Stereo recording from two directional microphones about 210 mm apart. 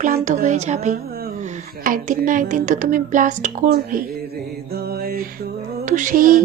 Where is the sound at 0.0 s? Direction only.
35° right (ahead or behind).